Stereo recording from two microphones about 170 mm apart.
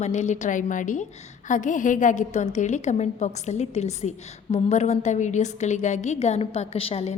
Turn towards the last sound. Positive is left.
turn(degrees=35)  # may be behind; listen again after turning